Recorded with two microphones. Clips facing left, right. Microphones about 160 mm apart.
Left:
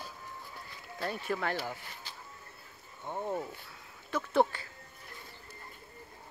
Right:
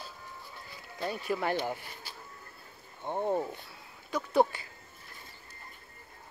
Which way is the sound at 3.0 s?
25° right (ahead or behind).